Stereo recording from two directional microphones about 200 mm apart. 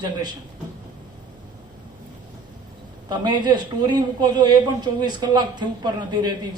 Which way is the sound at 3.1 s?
20° right (ahead or behind).